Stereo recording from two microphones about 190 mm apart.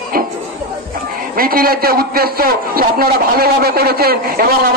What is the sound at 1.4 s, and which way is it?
A man's voice, 50° right (ahead or behind).